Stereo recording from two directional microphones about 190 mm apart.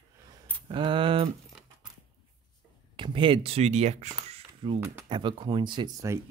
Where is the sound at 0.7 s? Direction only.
25° right (ahead or behind).